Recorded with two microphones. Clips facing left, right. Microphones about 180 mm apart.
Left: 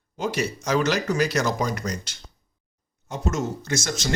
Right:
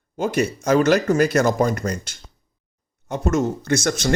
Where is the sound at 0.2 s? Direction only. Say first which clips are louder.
Right 5 dB; 55° right (ahead or behind).